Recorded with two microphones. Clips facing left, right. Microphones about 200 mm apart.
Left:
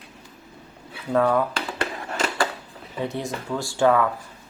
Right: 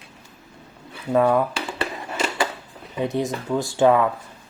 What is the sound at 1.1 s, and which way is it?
Speech, 15° right (ahead or behind).